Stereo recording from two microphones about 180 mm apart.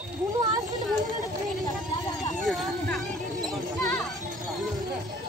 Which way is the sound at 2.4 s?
Centre (ahead or behind).